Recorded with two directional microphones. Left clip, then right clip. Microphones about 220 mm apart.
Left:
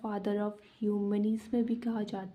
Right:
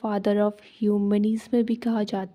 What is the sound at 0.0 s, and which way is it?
Speech, 40° right (ahead or behind).